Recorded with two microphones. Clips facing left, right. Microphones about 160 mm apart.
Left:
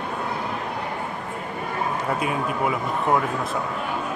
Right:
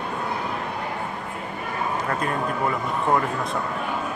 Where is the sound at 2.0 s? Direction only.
10° left (ahead or behind).